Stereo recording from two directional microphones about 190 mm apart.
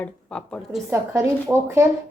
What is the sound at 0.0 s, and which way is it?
Speech, 5° left (ahead or behind).